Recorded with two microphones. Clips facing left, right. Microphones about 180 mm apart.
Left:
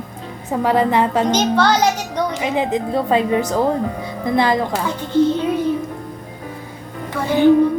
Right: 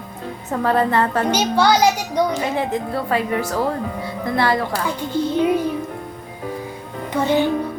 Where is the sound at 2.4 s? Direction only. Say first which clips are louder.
Left 2 dB; 15° left (ahead or behind).